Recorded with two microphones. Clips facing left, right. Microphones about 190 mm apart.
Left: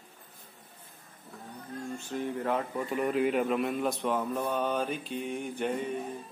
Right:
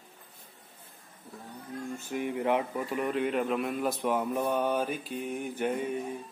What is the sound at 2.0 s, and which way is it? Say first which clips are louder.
Speech: right 3 dB; 15° right (ahead or behind).